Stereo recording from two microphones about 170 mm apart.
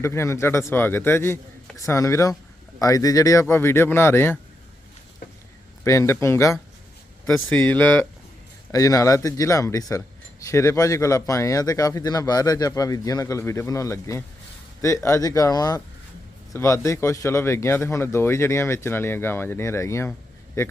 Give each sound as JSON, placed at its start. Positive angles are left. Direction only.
{"t": 0.0, "sound": "speech", "side_deg": 15}
{"t": 5.8, "sound": "speech", "side_deg": 15}